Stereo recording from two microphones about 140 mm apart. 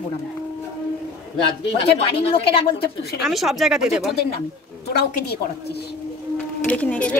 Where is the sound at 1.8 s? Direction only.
45° left (ahead or behind).